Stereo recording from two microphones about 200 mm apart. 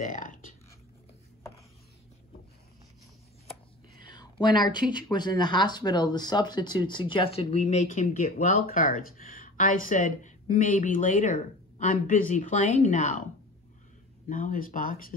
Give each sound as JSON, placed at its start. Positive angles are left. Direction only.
{"t": 0.0, "sound": "a sound", "side_deg": 40}
{"t": 4.1, "sound": "speech", "side_deg": 20}
{"t": 14.3, "sound": "speech", "side_deg": 45}